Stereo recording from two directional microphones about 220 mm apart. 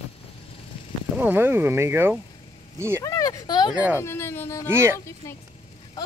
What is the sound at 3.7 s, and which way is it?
Speech, 5° right (ahead or behind).